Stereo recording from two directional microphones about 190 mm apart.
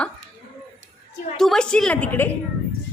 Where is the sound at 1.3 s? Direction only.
Centre (ahead or behind).